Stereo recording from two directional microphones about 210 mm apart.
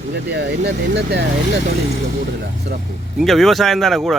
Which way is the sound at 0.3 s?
55° right (ahead or behind).